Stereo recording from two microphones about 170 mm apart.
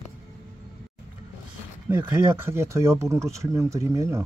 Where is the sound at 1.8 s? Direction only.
15° right (ahead or behind).